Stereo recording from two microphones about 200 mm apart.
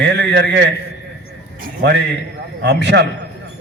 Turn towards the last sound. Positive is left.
turn(degrees=-55)  # may be behind; listen again after turning